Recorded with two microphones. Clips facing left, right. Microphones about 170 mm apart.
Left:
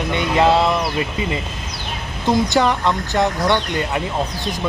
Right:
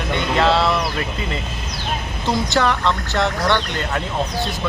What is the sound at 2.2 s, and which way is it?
Speech, 20° left (ahead or behind).